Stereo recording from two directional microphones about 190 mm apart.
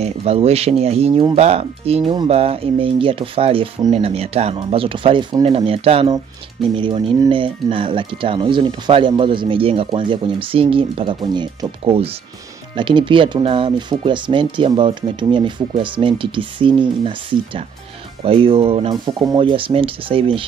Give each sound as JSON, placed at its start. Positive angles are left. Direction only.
{"t": 0.0, "sound": "speech", "side_deg": -30}
{"t": 18.2, "sound": "speech", "side_deg": -30}